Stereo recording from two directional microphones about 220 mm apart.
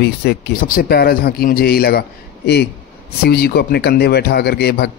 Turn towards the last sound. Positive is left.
turn(degrees=50)  # may be behind; listen again after turning